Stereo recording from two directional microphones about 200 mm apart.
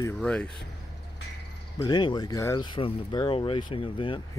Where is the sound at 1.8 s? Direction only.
20° left (ahead or behind).